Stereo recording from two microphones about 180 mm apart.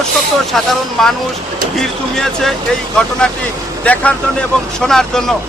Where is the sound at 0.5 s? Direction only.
Centre (ahead or behind).